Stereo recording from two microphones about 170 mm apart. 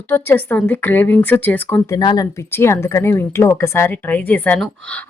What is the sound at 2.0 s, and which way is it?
Speech, 25° left (ahead or behind).